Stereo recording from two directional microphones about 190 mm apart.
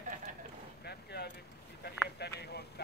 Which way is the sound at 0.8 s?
60° left (ahead or behind).